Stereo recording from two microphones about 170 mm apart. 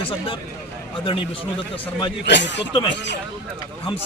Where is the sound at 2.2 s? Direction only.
90° left.